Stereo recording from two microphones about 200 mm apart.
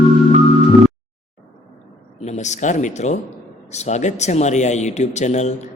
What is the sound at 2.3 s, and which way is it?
Speech, 35° left (ahead or behind).